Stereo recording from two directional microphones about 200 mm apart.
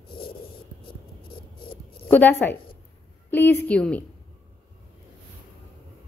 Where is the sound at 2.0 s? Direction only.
10° left (ahead or behind).